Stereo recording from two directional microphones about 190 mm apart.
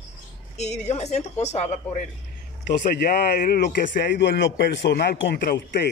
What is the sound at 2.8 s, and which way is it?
A man's voice, 55° left (ahead or behind).